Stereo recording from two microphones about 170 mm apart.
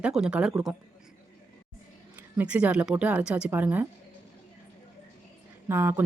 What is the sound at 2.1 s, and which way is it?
Speech, 10° right (ahead or behind).